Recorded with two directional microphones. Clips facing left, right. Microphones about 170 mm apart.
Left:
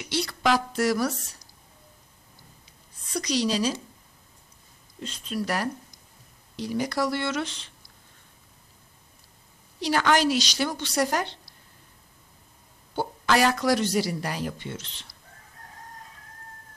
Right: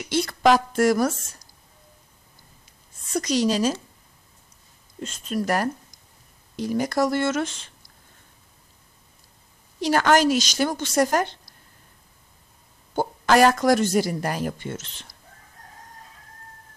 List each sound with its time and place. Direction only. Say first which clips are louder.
0.1 s a woman's voice: right 6 dB; 50° right (ahead or behind)
3.1 s speech: right 4 dB; 45° right (ahead or behind)
5.0 s speech: right 4 dB; 45° right (ahead or behind)
9.8 s speech: right 4 dB; 45° right (ahead or behind)
12.9 s speech: right 5 dB; 45° right (ahead or behind)